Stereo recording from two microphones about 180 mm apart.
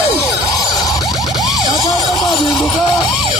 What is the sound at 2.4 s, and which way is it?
Speech, centre (ahead or behind).